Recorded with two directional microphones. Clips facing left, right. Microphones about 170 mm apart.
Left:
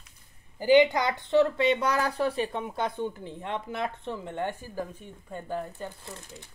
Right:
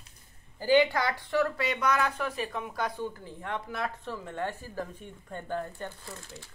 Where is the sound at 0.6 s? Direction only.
20° left (ahead or behind).